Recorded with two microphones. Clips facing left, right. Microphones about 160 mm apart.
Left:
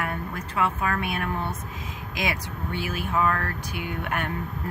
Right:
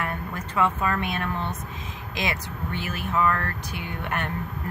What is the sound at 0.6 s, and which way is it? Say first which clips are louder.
Speech: right 2 dB; 10° left (ahead or behind).